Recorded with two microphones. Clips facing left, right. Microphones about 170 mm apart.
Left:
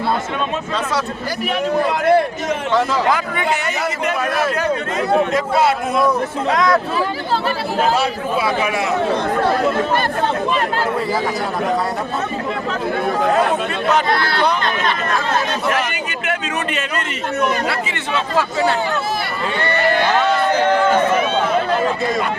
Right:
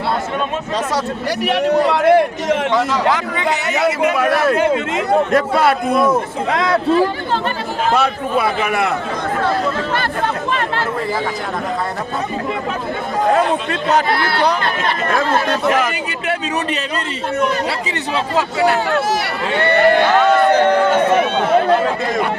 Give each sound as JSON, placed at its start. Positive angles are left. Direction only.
{"t": 1.4, "sound": "a man's voice", "side_deg": -75}
{"t": 4.5, "sound": "speech", "side_deg": -20}
{"t": 5.3, "sound": "a man's voice", "side_deg": -60}
{"t": 7.9, "sound": "a man's voice", "side_deg": -60}
{"t": 15.7, "sound": "speech", "side_deg": -40}
{"t": 19.5, "sound": "a man's voice", "side_deg": -60}